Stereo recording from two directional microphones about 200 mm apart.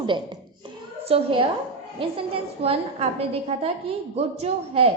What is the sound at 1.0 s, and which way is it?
A woman's voice, 30° right (ahead or behind).